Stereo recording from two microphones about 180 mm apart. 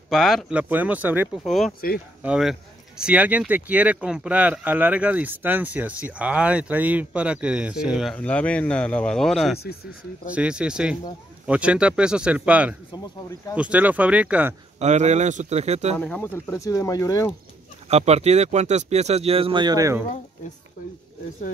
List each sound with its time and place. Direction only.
0.1 s speech: centre (ahead or behind)
1.4 s speech: centre (ahead or behind)
14.8 s speech: 40° right (ahead or behind)
16.0 s speech: 10° left (ahead or behind)
17.8 s speech: 35° right (ahead or behind); by 20.0 s 20° right (ahead or behind)